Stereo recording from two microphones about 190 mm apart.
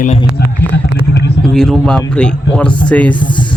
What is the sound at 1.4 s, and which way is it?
Speech, centre (ahead or behind).